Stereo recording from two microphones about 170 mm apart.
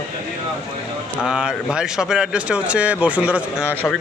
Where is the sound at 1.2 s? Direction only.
5° right (ahead or behind).